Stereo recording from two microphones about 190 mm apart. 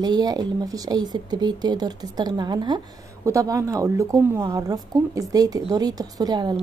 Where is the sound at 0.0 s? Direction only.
20° right (ahead or behind).